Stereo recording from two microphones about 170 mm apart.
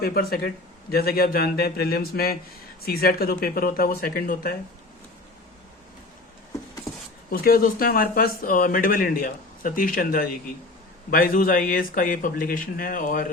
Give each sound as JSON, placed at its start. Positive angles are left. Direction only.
{"t": 0.0, "sound": "speech", "side_deg": 65}
{"t": 7.3, "sound": "speech", "side_deg": 60}